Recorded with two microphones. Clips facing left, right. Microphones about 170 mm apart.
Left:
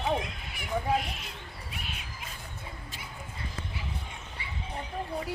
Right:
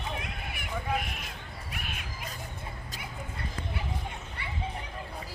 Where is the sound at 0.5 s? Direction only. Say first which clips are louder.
Left 4 dB; 55° right (ahead or behind).